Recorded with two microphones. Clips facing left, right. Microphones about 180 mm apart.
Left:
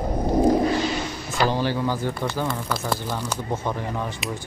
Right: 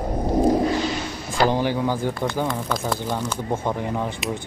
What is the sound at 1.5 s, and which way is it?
Speech, 15° right (ahead or behind).